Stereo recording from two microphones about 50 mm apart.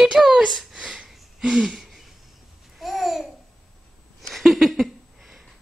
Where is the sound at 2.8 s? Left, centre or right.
Centre.